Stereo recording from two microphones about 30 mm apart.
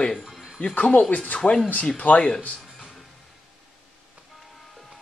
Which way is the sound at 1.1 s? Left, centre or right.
Left.